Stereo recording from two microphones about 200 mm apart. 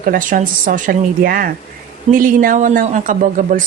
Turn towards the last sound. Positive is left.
turn(degrees=-40)  # may be behind; listen again after turning